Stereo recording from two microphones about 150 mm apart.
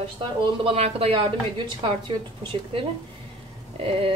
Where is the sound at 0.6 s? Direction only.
40° right (ahead or behind).